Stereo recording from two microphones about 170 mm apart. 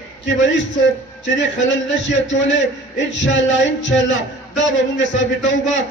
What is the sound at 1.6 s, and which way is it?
A man's voice, 90° left.